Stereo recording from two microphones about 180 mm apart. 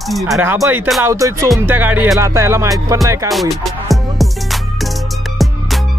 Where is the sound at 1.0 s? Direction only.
15° right (ahead or behind).